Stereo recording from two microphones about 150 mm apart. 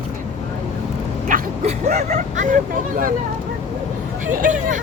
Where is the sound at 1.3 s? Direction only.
65° right (ahead or behind).